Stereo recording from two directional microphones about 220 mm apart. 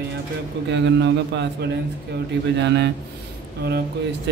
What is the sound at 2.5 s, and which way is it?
Mantra, 50° right (ahead or behind).